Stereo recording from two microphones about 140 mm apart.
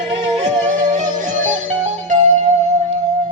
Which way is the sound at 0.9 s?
65° right (ahead or behind).